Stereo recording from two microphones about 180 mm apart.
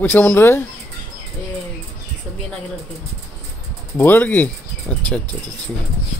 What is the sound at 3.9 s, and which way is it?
Speech, 10° left (ahead or behind).